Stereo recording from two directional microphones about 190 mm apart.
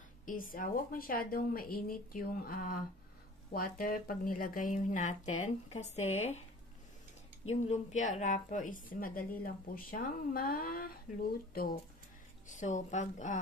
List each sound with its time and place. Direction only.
0.2 s speech: 45° left (ahead or behind)
7.4 s a woman's voice: 35° left (ahead or behind)